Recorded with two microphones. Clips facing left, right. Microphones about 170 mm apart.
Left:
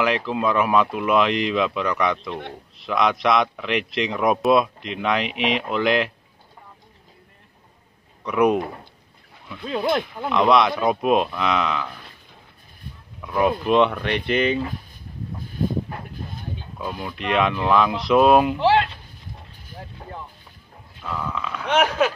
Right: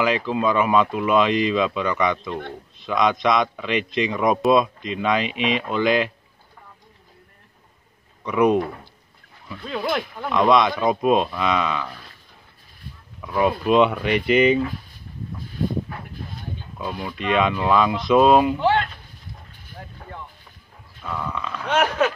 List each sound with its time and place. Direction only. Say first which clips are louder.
0.0 s speech: right 1 dB; centre (ahead or behind)
8.2 s speech: even; centre (ahead or behind)
9.7 s speech: left 3 dB; 25° left (ahead or behind)
10.3 s speech: even; centre (ahead or behind)
13.2 s speech: even; centre (ahead or behind)
16.7 s speech: right 1 dB; centre (ahead or behind)
21.0 s a sound: even; centre (ahead or behind)
21.6 s speech: left 1 dB; 10° left (ahead or behind)